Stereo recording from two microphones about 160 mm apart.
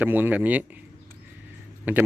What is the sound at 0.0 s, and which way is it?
A man's voice, 10° right (ahead or behind).